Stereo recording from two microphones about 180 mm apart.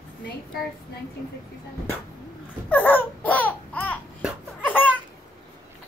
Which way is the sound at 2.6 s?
10° left (ahead or behind).